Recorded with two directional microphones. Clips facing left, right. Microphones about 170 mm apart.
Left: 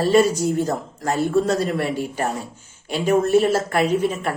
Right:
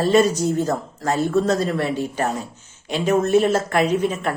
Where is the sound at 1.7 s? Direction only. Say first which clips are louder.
Even; 40° right (ahead or behind).